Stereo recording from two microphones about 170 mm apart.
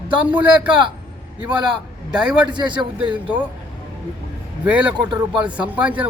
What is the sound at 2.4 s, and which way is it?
Speech, 25° right (ahead or behind).